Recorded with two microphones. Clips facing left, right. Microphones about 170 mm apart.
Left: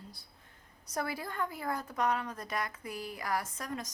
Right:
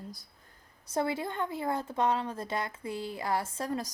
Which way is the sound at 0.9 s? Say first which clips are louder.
Right 6 dB; 25° right (ahead or behind).